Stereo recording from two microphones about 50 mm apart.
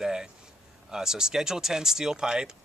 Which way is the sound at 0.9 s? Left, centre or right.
Centre.